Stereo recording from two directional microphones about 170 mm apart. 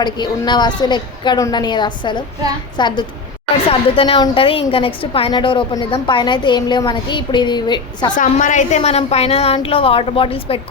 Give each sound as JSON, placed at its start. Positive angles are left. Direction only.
{"t": 0.0, "sound": "a woman's voice", "side_deg": 25}
{"t": 8.1, "sound": "a woman's voice", "side_deg": 50}